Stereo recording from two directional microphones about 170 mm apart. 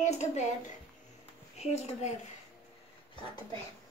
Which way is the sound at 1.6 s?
40° left (ahead or behind).